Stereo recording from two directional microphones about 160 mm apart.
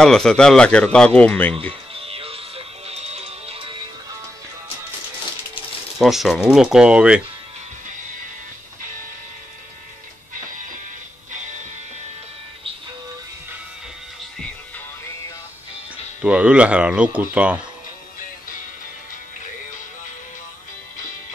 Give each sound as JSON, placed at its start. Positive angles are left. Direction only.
{"t": 0.0, "sound": "speech", "side_deg": 5}
{"t": 2.0, "sound": "music", "side_deg": -35}
{"t": 5.9, "sound": "speech", "side_deg": 0}
{"t": 16.2, "sound": "speech", "side_deg": -5}